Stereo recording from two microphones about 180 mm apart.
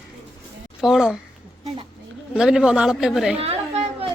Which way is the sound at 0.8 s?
5° right (ahead or behind).